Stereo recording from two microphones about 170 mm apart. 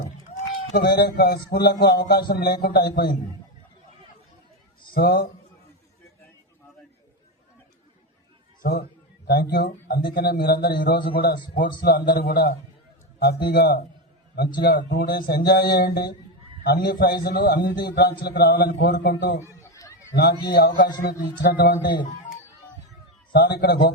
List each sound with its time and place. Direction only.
0.7 s a man's voice: 60° left (ahead or behind)
4.9 s speech: 65° left (ahead or behind)
9.2 s a man's voice: 65° left (ahead or behind)
19.4 s a sound: 20° left (ahead or behind)
20.5 s speech: 70° left (ahead or behind)
23.3 s speech: 70° left (ahead or behind)